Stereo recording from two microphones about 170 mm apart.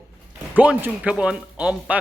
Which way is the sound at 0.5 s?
10° right (ahead or behind).